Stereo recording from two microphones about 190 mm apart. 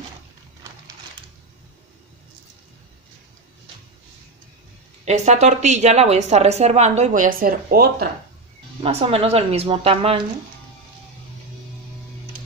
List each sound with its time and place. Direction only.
5.0 s speech: 35° right (ahead or behind); by 8.1 s 55° right (ahead or behind)
8.8 s speech: 30° right (ahead or behind)